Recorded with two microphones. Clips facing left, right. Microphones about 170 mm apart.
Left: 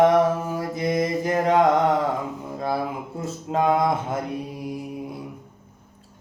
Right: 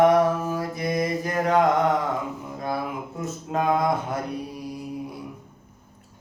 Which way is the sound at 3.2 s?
25° left (ahead or behind).